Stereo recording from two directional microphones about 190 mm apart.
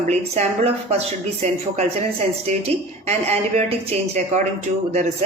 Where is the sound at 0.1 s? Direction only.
35° right (ahead or behind).